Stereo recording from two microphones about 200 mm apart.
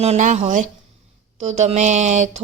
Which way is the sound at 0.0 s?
35° right (ahead or behind).